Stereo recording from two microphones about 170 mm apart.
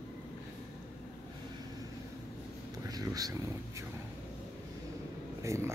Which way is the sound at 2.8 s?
20° right (ahead or behind).